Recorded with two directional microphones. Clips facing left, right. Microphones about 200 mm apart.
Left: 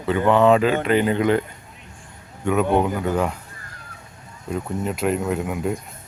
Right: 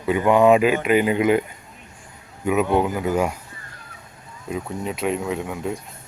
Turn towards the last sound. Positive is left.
turn(degrees=5)  # may be behind; listen again after turning